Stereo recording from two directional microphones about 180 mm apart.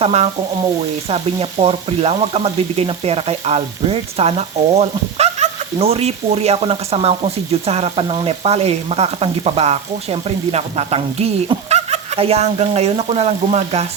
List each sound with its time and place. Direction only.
0.0 s frying: 35° right (ahead or behind)